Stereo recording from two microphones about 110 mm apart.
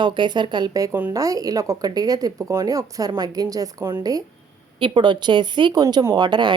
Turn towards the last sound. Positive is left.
turn(degrees=-40)  # may be behind; listen again after turning